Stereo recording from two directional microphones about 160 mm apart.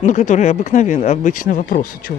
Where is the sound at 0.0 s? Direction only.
50° left (ahead or behind).